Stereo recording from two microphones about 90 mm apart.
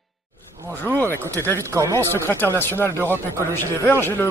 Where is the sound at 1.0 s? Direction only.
25° left (ahead or behind).